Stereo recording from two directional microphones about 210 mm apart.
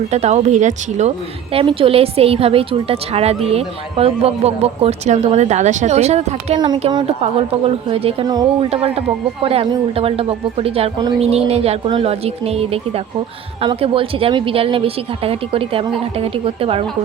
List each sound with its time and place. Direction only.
0.1 s speech: 30° right (ahead or behind)